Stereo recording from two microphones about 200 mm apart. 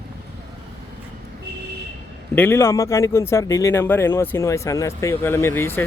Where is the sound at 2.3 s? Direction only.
10° left (ahead or behind).